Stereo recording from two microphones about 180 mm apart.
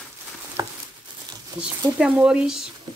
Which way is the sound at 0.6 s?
25° right (ahead or behind).